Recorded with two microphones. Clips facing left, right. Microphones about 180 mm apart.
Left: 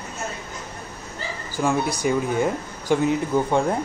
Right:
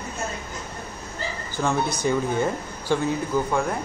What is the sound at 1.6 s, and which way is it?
Speech, 10° left (ahead or behind).